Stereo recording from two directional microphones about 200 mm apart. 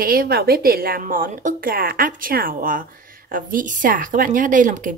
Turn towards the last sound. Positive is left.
turn(degrees=-40)  # may be behind; listen again after turning